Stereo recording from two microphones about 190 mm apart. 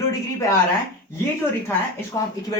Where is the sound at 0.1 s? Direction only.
15° left (ahead or behind).